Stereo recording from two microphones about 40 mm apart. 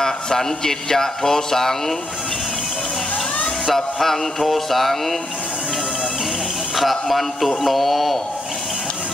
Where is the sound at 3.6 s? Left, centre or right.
Centre.